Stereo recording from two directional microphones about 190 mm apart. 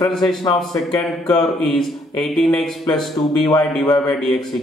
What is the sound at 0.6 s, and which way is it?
Speech, centre (ahead or behind).